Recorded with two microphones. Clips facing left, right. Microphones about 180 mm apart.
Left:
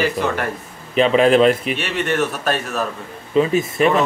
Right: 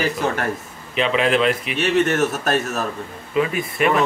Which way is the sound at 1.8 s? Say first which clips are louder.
Right 5 dB; 45° right (ahead or behind).